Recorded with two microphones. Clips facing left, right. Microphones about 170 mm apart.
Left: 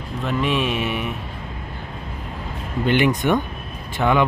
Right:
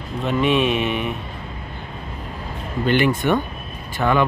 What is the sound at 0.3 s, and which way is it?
Speech, centre (ahead or behind).